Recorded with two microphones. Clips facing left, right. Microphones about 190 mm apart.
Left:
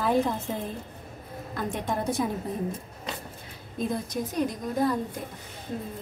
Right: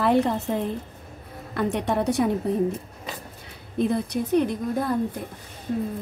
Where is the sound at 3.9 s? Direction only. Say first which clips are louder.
Right 10 dB; 65° right (ahead or behind).